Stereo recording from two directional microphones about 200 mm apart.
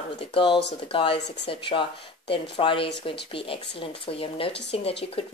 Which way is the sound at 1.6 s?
25° left (ahead or behind).